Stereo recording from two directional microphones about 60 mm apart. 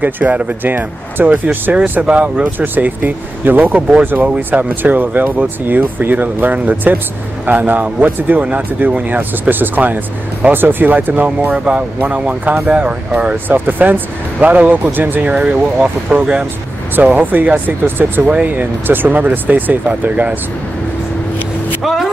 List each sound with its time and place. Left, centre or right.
0.0 s speech: right
2.6 s speech: right
11.5 s speech: centre
13.5 s speech: right
15.2 s speech: centre
16.9 s speech: right
18.3 s speech: centre
18.9 s speech: right
21.8 s vehicle: centre